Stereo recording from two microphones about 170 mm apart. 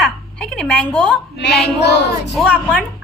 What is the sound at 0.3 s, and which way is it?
Speech, 5° left (ahead or behind).